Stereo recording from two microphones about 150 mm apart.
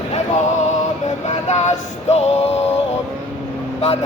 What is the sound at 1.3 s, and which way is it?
Male singing, 50° left (ahead or behind).